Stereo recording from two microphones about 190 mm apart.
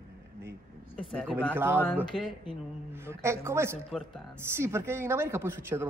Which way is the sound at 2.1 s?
Centre (ahead or behind).